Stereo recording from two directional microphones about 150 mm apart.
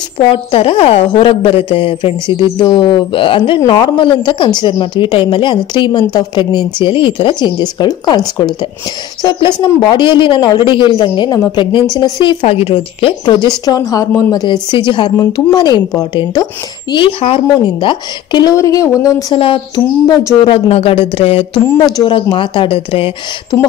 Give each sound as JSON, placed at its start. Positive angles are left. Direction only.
{"t": 0.3, "sound": "a woman's voice", "side_deg": 35}
{"t": 12.4, "sound": "a woman's voice", "side_deg": 40}
{"t": 16.9, "sound": "a woman's voice", "side_deg": 35}
{"t": 19.3, "sound": "speech", "side_deg": 35}